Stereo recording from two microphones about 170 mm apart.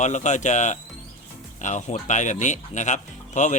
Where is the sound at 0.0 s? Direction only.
45° left (ahead or behind).